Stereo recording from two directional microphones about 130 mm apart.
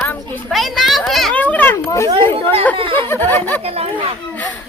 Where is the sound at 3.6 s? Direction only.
50° right (ahead or behind).